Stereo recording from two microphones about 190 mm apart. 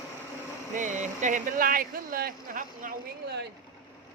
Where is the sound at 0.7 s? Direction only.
40° right (ahead or behind).